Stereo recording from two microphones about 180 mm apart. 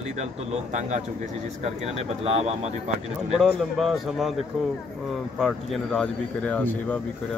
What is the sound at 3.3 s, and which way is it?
Speech, centre (ahead or behind).